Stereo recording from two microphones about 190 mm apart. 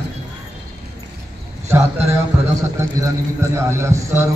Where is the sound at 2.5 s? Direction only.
15° right (ahead or behind).